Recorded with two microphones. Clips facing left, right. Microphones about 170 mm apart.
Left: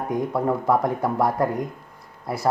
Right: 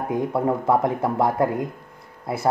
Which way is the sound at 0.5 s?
25° right (ahead or behind).